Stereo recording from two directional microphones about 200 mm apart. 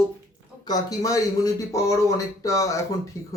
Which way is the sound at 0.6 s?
20° left (ahead or behind).